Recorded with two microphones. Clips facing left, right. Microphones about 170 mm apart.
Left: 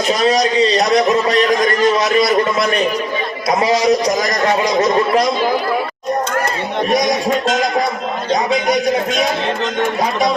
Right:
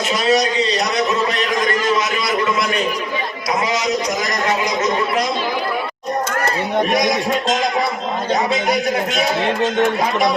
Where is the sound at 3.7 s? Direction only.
35° left (ahead or behind).